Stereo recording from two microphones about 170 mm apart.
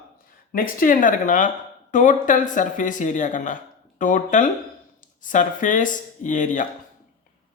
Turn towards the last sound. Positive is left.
turn(degrees=50)  # may be behind; listen again after turning